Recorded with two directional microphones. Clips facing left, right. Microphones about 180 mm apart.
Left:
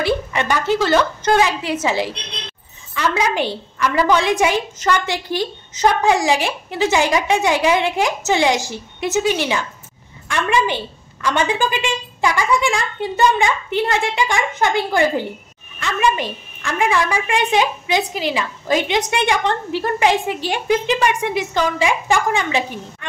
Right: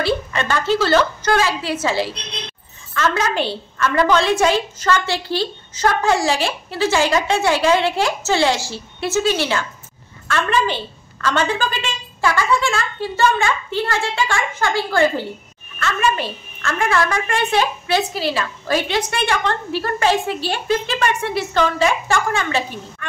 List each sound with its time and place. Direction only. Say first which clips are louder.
0.0 s a woman's voice: left 1 dB; 15° left (ahead or behind)